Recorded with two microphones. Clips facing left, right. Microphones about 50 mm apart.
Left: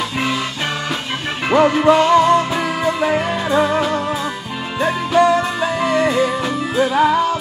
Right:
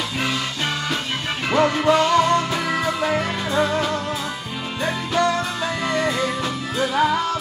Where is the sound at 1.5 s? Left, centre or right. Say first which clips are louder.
Left 5 dB; centre.